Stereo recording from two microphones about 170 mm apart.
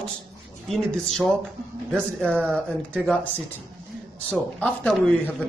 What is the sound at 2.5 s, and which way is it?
Speech, 5° left (ahead or behind).